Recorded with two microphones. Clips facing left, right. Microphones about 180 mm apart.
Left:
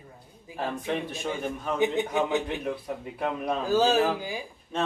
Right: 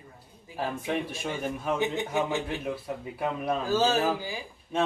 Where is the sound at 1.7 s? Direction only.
15° left (ahead or behind).